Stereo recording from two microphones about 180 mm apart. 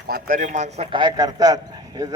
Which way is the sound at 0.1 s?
45° right (ahead or behind).